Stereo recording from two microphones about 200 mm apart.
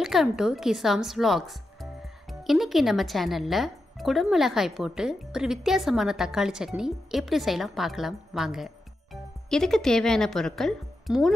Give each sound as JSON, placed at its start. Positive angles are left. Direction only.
{"t": 0.0, "sound": "speech", "side_deg": 0}